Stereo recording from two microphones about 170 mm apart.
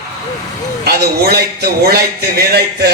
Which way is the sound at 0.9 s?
65° right (ahead or behind).